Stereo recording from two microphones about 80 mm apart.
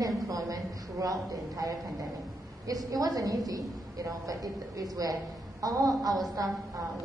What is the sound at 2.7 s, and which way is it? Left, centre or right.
A woman's voice, right.